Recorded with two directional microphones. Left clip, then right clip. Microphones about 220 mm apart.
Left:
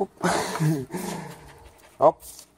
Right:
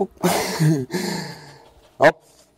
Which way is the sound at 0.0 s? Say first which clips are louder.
Right 4 dB; 50° right (ahead or behind).